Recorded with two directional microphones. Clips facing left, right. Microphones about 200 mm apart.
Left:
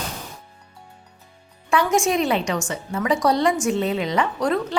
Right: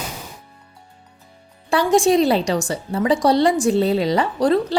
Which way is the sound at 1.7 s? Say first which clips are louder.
Right 4 dB; 35° right (ahead or behind).